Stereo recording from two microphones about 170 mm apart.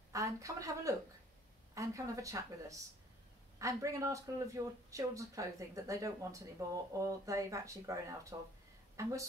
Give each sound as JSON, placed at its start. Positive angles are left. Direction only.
{"t": 0.1, "sound": "a woman's voice", "side_deg": -20}